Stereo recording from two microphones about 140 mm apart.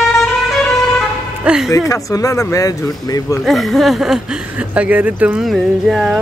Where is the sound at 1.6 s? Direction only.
20° left (ahead or behind).